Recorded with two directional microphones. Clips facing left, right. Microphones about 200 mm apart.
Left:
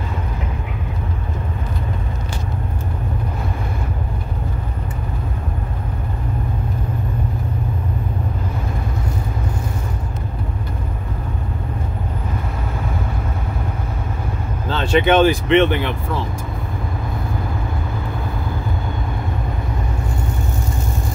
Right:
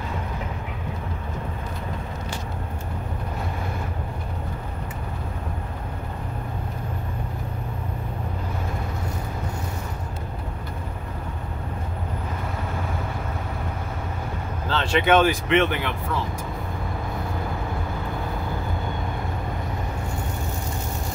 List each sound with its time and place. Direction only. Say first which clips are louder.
14.7 s speech: left 4 dB; 25° left (ahead or behind)